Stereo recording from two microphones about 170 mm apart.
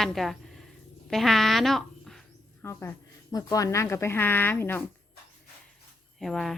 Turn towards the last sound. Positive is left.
turn(degrees=0)  # may be behind; listen again after turning